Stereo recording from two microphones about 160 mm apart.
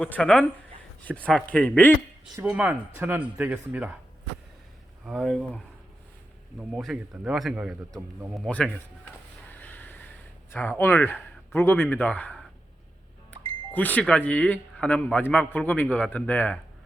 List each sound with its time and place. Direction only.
0.0 s a man's voice: 5° left (ahead or behind)
2.6 s speech: 10° right (ahead or behind)
5.0 s a man's voice: centre (ahead or behind)
6.7 s a man's voice: 5° right (ahead or behind)
9.5 s a sound: 10° left (ahead or behind)
10.5 s speech: 10° left (ahead or behind)
13.7 s a man's voice: 10° left (ahead or behind)